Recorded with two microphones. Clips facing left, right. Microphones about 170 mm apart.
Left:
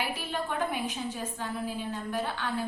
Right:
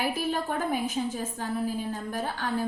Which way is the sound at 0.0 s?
40° right (ahead or behind).